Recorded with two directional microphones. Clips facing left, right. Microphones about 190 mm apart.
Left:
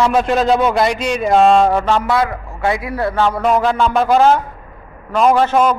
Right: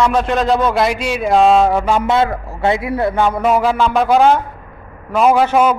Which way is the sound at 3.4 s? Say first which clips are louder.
Even; 5° right (ahead or behind).